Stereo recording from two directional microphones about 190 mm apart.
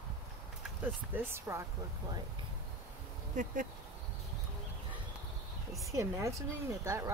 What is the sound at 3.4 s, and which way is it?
Speech, 40° right (ahead or behind).